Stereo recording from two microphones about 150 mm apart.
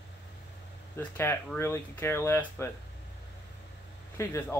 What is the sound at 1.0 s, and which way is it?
Speech, 15° left (ahead or behind).